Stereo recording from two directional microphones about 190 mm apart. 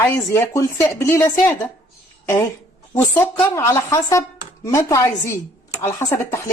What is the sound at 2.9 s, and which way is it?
Speech, 15° left (ahead or behind).